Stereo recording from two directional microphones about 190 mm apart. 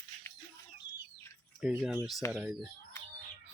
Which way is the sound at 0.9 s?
15° left (ahead or behind).